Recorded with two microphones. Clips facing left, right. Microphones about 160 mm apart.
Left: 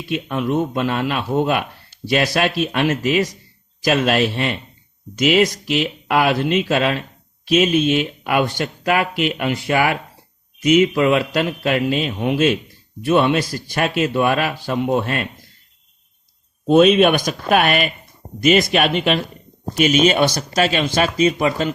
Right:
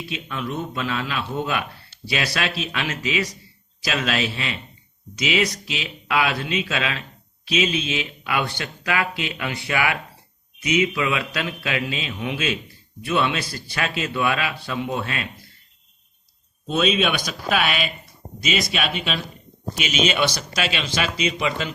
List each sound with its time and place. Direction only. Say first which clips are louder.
0.1 s speech: left 10 dB; 50° left (ahead or behind)
16.6 s speech: left 9 dB; 55° left (ahead or behind)